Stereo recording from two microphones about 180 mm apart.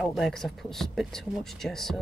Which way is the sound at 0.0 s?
Centre (ahead or behind).